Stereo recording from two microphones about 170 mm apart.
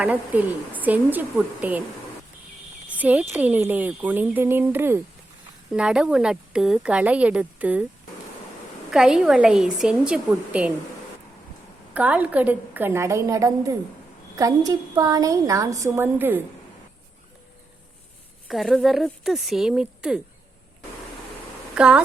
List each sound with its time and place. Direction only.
0.0 s speech: 10° right (ahead or behind)
3.0 s a woman's voice: 10° right (ahead or behind)
8.9 s a woman's voice: 5° right (ahead or behind)
11.9 s a woman's voice: 10° right (ahead or behind)
18.4 s a woman's voice: centre (ahead or behind)
21.8 s a woman's voice: 5° right (ahead or behind)